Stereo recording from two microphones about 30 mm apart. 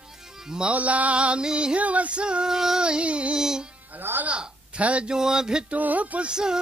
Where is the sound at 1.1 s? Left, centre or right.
Right.